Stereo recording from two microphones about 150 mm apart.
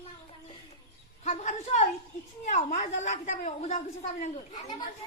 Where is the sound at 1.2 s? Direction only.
50° left (ahead or behind).